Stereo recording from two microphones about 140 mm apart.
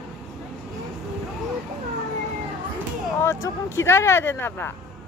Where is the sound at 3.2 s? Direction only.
20° left (ahead or behind).